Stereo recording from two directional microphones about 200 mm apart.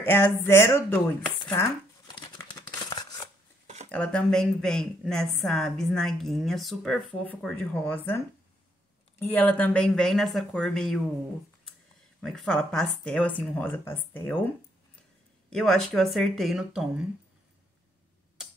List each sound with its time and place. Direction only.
0.0 s speech: 10° left (ahead or behind)
2.9 s scissors: 20° left (ahead or behind)
3.9 s a woman's voice: 5° left (ahead or behind)
9.2 s a woman's voice: 10° left (ahead or behind)
12.2 s a woman's voice: centre (ahead or behind)
15.5 s a woman's voice: centre (ahead or behind)